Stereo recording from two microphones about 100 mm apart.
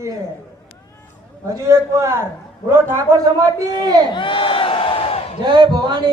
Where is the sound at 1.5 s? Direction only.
30° right (ahead or behind).